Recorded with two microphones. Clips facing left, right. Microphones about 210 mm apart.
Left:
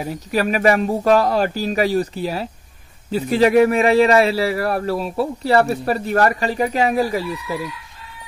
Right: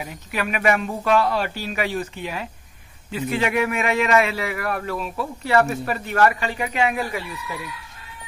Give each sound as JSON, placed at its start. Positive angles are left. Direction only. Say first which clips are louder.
{"t": 0.0, "sound": "a man's voice", "louder": "left 7 dB", "side_deg": 35}